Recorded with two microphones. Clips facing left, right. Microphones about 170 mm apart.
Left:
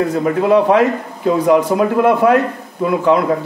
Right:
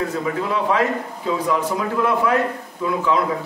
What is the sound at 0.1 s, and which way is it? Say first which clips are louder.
A man's voice: left 10 dB; 65° left (ahead or behind).